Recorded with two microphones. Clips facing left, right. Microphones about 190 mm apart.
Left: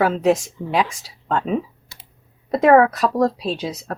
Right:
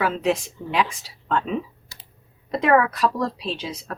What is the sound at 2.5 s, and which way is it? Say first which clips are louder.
Speech: left 6 dB; 40° left (ahead or behind).